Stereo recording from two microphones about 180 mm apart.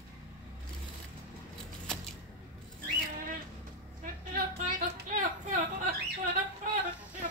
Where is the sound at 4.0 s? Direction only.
45° right (ahead or behind).